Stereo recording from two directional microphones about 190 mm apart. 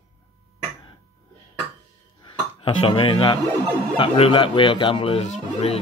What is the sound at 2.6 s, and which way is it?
Speech, 25° left (ahead or behind).